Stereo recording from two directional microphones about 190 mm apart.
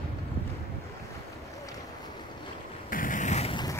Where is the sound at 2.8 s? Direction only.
45° left (ahead or behind); by 3.8 s 25° left (ahead or behind).